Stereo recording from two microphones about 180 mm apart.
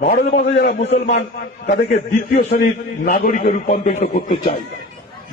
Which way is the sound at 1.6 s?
40° left (ahead or behind).